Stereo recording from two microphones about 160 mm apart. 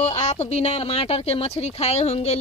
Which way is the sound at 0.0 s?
45° left (ahead or behind).